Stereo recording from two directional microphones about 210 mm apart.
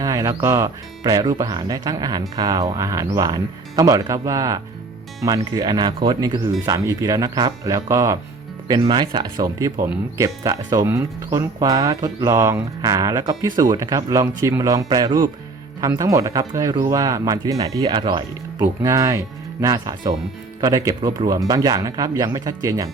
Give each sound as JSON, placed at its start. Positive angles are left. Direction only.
{"t": 0.0, "sound": "speech", "side_deg": -15}